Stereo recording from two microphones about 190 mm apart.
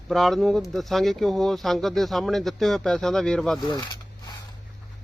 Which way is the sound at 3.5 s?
20° left (ahead or behind).